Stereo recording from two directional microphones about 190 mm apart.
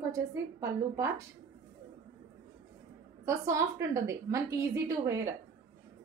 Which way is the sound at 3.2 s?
15° right (ahead or behind).